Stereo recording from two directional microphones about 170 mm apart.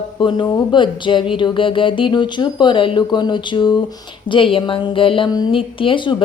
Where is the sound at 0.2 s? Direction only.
25° left (ahead or behind).